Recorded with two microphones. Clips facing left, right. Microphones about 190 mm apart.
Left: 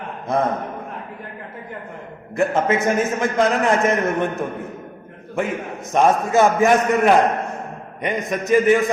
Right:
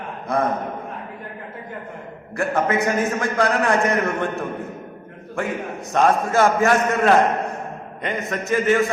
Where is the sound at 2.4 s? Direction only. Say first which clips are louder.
Left 2 dB; 20° left (ahead or behind).